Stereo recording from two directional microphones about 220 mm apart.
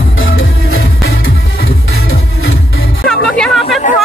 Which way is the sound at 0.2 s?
65° left (ahead or behind).